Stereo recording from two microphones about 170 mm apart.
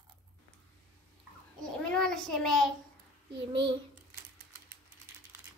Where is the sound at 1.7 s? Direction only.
5° left (ahead or behind).